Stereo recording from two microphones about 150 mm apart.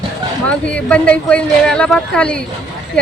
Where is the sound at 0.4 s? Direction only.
10° left (ahead or behind).